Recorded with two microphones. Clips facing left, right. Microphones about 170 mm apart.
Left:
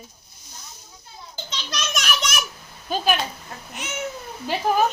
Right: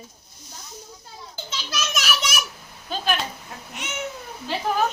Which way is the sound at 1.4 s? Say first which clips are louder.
Even; 5° right (ahead or behind).